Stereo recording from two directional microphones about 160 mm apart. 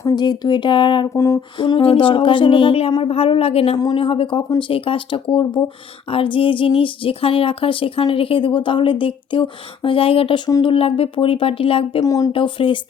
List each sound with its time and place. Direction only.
0.0 s speech: 25° left (ahead or behind)
1.1 s a sound: 15° left (ahead or behind)
1.5 s speech: 30° left (ahead or behind)
3.8 s speech: 30° left (ahead or behind)
12.0 s speech: 20° left (ahead or behind)
12.3 s speech: 30° left (ahead or behind)